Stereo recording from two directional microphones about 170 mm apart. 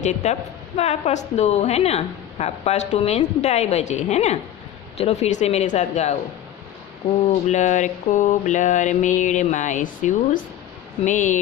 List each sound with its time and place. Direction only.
0.0 s a woman's voice: 45° left (ahead or behind)
7.4 s mantra: 45° left (ahead or behind)